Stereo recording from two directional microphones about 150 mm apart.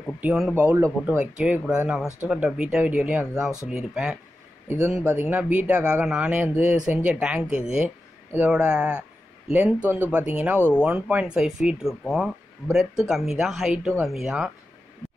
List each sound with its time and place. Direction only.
0.2 s speech: 5° right (ahead or behind)
4.6 s speech: 20° right (ahead or behind)